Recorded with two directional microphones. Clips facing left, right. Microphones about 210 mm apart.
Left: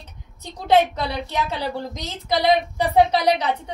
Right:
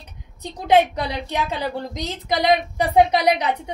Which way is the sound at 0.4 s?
15° right (ahead or behind).